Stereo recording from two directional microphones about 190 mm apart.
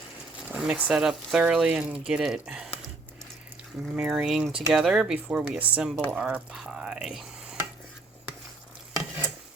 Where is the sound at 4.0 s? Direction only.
5° right (ahead or behind).